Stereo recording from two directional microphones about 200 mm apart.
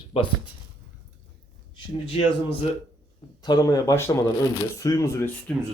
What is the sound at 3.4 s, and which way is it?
Speech, 20° left (ahead or behind).